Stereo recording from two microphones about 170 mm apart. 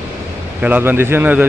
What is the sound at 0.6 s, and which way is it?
Speech, 10° right (ahead or behind).